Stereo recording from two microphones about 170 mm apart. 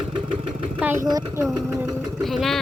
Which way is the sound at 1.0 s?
20° right (ahead or behind).